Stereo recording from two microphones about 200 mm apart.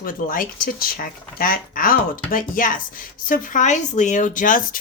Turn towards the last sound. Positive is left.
turn(degrees=40)  # may be behind; listen again after turning